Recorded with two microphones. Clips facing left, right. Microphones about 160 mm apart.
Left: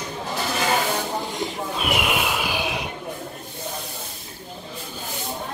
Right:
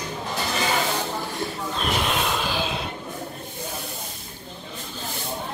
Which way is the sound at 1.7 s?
10° left (ahead or behind).